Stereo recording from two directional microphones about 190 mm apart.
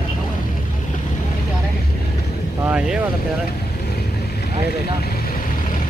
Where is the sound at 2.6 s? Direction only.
5° right (ahead or behind).